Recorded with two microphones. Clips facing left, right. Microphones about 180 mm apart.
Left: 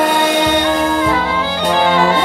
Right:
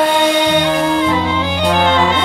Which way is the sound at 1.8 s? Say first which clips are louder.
Left 2 dB; 10° left (ahead or behind).